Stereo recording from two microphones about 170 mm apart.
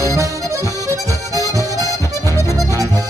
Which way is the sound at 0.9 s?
20° right (ahead or behind).